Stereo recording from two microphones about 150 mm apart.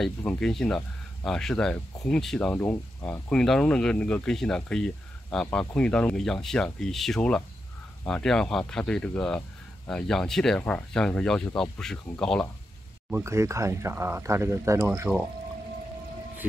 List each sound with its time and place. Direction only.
0.0 s speech: 5° left (ahead or behind)
13.1 s speech: 20° right (ahead or behind)